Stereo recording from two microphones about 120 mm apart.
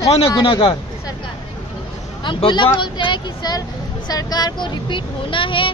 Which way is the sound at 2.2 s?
40° left (ahead or behind).